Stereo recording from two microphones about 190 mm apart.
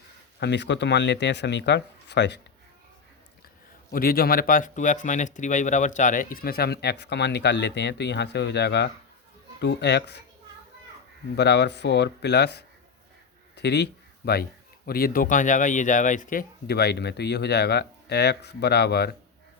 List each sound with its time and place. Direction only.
0.3 s speech: 65° left (ahead or behind)
3.9 s speech: 50° left (ahead or behind)
11.3 s speech: 65° left (ahead or behind)